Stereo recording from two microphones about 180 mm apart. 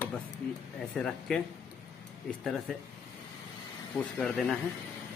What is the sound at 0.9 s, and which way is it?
Speech, 5° left (ahead or behind).